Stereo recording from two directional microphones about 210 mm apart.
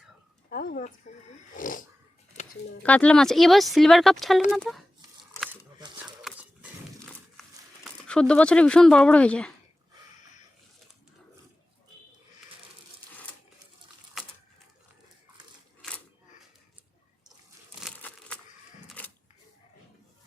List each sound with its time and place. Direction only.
0.5 s speech: 45° left (ahead or behind)
2.8 s speech: 5° left (ahead or behind)
6.2 s dog: 5° right (ahead or behind)
7.4 s crumpling: centre (ahead or behind)
8.0 s speech: 5° left (ahead or behind)
17.7 s crumpling: centre (ahead or behind)
18.9 s a sound: 5° left (ahead or behind)